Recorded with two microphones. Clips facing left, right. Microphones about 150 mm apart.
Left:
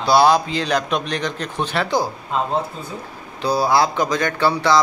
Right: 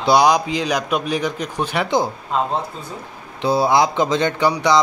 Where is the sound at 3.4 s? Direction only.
20° right (ahead or behind).